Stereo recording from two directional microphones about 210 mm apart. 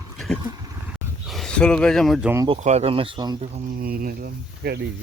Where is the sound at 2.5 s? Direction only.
30° right (ahead or behind).